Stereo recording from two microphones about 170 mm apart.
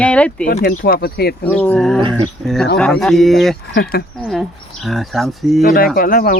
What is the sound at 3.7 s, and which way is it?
Speech, 60° left (ahead or behind).